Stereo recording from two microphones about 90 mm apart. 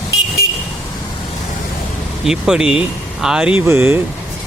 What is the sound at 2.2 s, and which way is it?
Speech, 5° right (ahead or behind).